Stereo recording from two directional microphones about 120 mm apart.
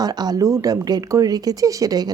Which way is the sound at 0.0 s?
35° right (ahead or behind).